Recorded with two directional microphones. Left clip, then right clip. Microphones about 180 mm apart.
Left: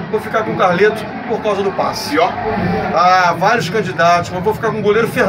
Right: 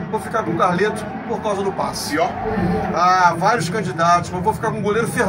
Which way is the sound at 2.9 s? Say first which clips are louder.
Left 3 dB; 15° left (ahead or behind).